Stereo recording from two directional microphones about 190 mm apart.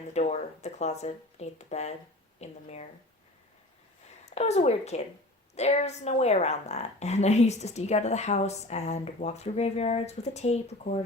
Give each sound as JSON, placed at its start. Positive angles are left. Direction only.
{"t": 0.1, "sound": "a woman's voice", "side_deg": 35}
{"t": 4.3, "sound": "a woman's voice", "side_deg": 35}